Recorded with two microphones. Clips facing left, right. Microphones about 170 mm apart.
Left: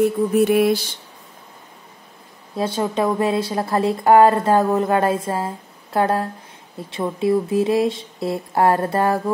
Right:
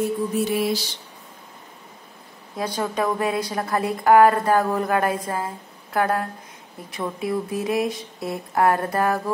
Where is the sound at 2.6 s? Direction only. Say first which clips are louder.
Left 4 dB; 25° left (ahead or behind).